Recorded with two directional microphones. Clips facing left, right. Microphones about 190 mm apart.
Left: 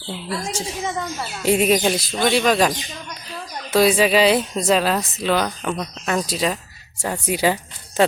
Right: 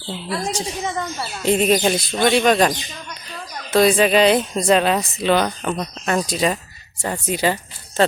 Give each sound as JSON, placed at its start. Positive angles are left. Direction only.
{"t": 0.5, "sound": "speech", "side_deg": 5}